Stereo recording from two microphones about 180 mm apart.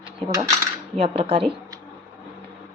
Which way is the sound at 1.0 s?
35° right (ahead or behind).